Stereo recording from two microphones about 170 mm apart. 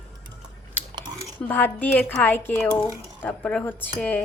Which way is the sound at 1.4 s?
10° left (ahead or behind).